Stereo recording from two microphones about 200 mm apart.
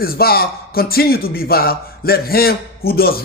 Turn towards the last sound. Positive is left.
turn(degrees=50)  # may be behind; listen again after turning